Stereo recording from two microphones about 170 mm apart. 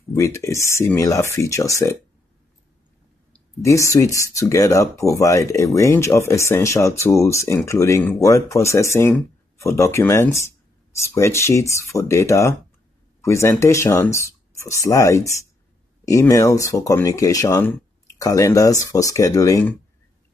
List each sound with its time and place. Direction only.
0.1 s speech: 15° left (ahead or behind)
3.6 s speech: 15° left (ahead or behind)